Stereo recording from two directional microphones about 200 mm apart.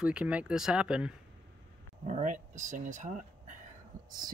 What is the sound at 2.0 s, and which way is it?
Speech, 35° right (ahead or behind).